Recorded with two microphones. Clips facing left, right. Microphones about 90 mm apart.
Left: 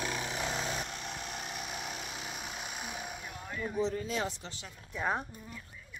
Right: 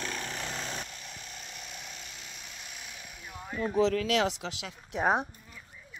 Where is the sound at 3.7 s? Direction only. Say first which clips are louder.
Right 7 dB; 90° right.